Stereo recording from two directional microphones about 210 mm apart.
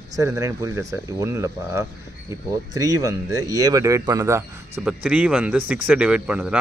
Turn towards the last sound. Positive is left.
turn(degrees=-5)  # may be behind; listen again after turning